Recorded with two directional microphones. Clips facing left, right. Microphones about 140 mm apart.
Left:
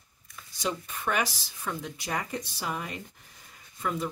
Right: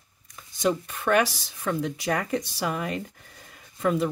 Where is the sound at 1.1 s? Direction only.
65° right (ahead or behind).